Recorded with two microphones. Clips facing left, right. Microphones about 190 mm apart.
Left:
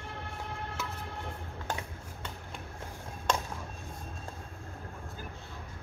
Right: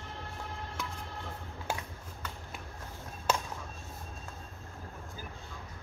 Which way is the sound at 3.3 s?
5° right (ahead or behind).